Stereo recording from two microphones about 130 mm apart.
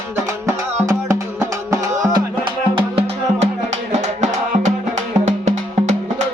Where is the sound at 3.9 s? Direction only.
60° right (ahead or behind).